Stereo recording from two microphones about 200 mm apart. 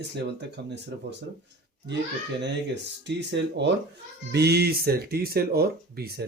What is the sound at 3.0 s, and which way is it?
Speech, 60° right (ahead or behind).